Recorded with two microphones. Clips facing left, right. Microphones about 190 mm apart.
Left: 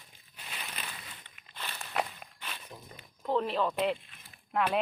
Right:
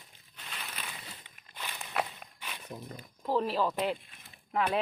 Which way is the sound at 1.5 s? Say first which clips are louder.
Even; 15° right (ahead or behind).